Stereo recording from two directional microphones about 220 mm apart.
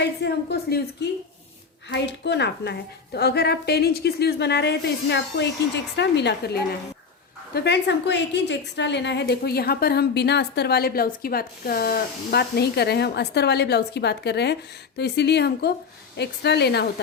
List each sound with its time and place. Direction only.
0.0 s a woman's voice: 50° left (ahead or behind)
1.9 s a woman's voice: 50° left (ahead or behind)